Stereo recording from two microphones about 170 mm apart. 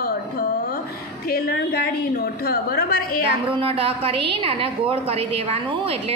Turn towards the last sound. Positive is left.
turn(degrees=-35)  # may be behind; listen again after turning